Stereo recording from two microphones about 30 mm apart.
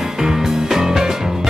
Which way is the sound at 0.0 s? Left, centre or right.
Centre.